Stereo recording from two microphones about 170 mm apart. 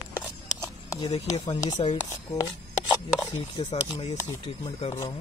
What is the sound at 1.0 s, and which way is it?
Speech, 40° left (ahead or behind).